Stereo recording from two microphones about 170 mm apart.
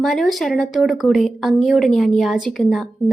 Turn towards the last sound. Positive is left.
turn(degrees=0)  # may be behind; listen again after turning